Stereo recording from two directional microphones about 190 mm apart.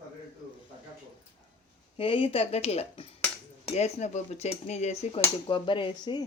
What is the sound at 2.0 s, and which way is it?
Speech, 30° left (ahead or behind).